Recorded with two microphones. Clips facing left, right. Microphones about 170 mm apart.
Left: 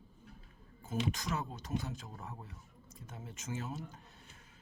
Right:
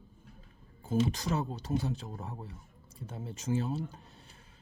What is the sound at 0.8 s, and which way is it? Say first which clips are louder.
Speech: right 7 dB; 30° right (ahead or behind).